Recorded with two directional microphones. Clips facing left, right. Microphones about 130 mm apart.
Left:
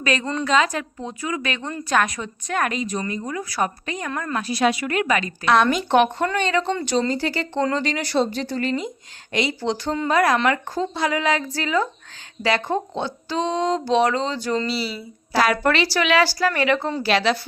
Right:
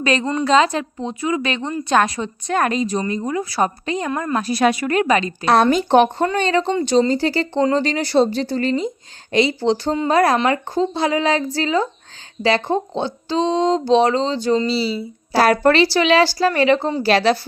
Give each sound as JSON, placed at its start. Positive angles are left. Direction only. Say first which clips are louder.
{"t": 0.0, "sound": "speech", "louder": "right 4 dB", "side_deg": -30}
{"t": 4.4, "sound": "speech", "louder": "right 3 dB", "side_deg": -45}
{"t": 6.7, "sound": "speech", "louder": "right 6 dB", "side_deg": -25}